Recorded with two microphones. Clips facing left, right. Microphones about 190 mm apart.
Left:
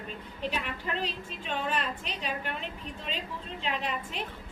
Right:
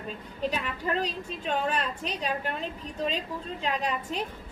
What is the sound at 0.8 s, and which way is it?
A woman's voice, 45° right (ahead or behind).